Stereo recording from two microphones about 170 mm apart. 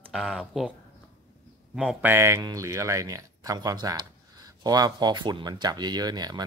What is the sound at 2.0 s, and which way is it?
A man's voice, 15° right (ahead or behind).